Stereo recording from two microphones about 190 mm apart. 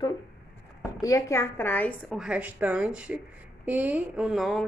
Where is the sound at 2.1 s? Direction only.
5° right (ahead or behind).